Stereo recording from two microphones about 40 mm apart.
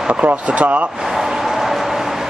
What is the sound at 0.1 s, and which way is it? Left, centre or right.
Speech, right.